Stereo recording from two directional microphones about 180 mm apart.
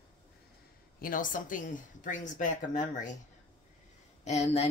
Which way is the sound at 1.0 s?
50° left (ahead or behind).